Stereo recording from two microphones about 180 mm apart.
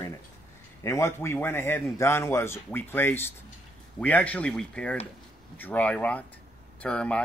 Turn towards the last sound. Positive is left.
turn(degrees=5)  # may be behind; listen again after turning